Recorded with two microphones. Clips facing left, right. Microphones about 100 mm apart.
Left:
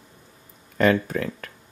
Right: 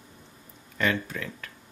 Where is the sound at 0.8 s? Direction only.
45° left (ahead or behind).